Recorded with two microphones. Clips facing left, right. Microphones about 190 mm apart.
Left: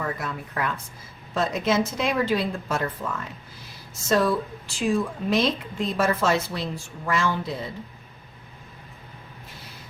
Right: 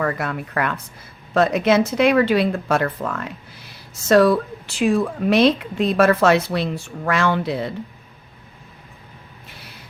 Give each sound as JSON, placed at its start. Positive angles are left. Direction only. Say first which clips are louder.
{"t": 0.0, "sound": "a woman's voice", "louder": "right 7 dB", "side_deg": -70}